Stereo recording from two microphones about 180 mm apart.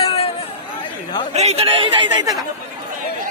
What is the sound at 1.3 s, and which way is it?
Speech, 35° right (ahead or behind).